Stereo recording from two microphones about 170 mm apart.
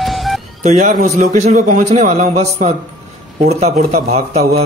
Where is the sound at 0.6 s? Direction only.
45° right (ahead or behind).